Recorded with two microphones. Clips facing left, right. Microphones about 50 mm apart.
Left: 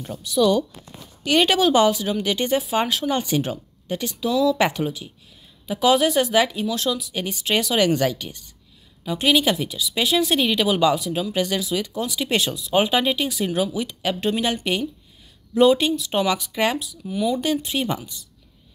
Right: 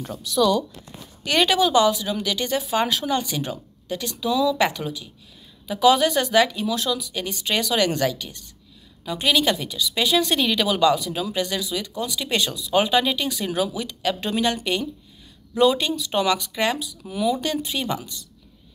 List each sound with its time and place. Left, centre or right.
0.3 s speech: left
4.3 s speech: centre
4.6 s speech: left
17.1 s speech: centre
17.6 s speech: left